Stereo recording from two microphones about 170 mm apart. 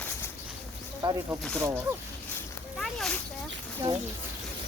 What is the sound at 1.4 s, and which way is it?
Speech, 5° left (ahead or behind).